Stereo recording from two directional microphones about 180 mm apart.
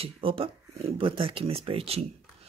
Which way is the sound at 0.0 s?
30° right (ahead or behind).